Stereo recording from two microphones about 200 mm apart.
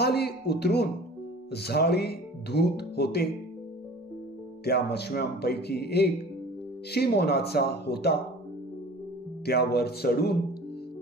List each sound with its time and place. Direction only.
0.0 s speech: 55° left (ahead or behind)
4.6 s speech: 55° left (ahead or behind)
9.5 s speech: 50° left (ahead or behind)